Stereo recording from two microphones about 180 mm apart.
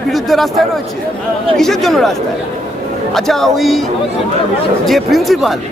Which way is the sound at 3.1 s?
Centre (ahead or behind).